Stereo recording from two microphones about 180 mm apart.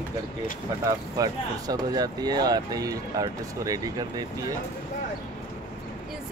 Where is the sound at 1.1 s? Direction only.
20° right (ahead or behind).